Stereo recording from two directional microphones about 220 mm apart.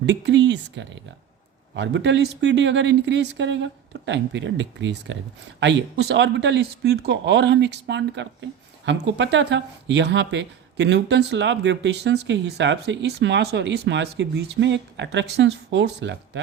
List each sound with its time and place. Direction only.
0.0 s speech: 50° right (ahead or behind)